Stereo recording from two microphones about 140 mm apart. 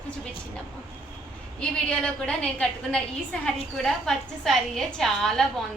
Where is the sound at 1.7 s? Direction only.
5° left (ahead or behind).